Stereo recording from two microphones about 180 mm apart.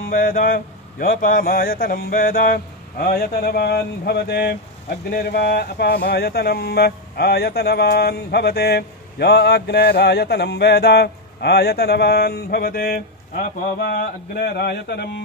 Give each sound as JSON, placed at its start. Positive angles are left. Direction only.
{"t": 0.0, "sound": "speech", "side_deg": 50}